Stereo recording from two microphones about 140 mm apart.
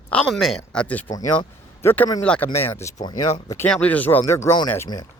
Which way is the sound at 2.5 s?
20° left (ahead or behind).